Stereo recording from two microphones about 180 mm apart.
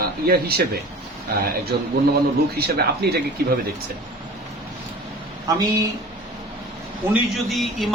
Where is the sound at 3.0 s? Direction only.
60° right (ahead or behind).